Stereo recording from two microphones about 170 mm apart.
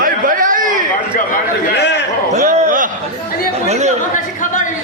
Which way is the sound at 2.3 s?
55° right (ahead or behind).